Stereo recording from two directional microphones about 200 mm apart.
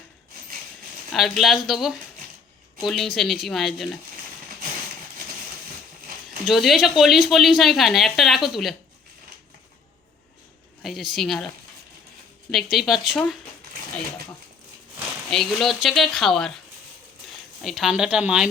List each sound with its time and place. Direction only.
1.1 s speech: centre (ahead or behind)
6.4 s speech: centre (ahead or behind)
10.8 s speech: centre (ahead or behind)
12.5 s speech: centre (ahead or behind)
15.3 s speech: centre (ahead or behind)
17.6 s speech: centre (ahead or behind)